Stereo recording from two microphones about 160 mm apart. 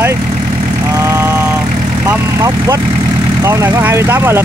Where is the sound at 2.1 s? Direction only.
20° right (ahead or behind).